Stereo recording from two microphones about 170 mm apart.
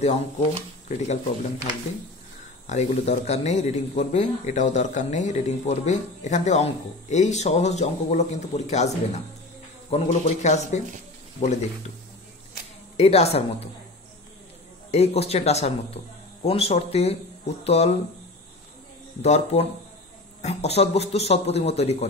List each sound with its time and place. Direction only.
0.0 s speech: 40° left (ahead or behind)
2.6 s speech: 40° left (ahead or behind)
12.9 s speech: 40° left (ahead or behind)
14.9 s speech: 35° left (ahead or behind)
19.2 s speech: 40° left (ahead or behind)